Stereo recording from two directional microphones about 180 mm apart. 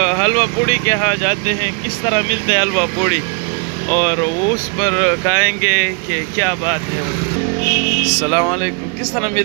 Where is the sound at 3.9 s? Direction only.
20° left (ahead or behind).